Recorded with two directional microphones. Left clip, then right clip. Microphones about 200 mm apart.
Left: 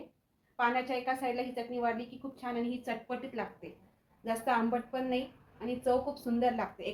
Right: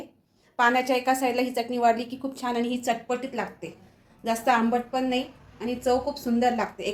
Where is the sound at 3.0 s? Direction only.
30° right (ahead or behind).